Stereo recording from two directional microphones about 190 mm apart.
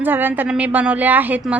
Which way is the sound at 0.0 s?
10° right (ahead or behind).